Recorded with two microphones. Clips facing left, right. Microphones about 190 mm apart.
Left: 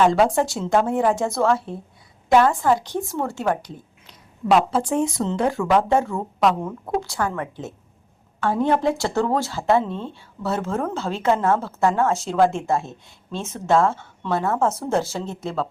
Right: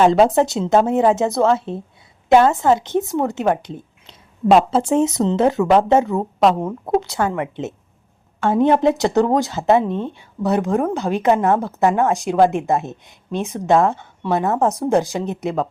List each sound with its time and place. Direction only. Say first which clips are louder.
0.0 s a woman's voice: right 4 dB; 25° right (ahead or behind)